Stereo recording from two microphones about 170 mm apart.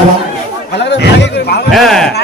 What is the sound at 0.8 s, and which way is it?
Speech, 85° left.